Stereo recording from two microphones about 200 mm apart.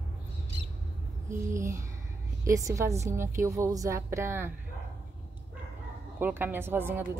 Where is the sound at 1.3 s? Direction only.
15° right (ahead or behind).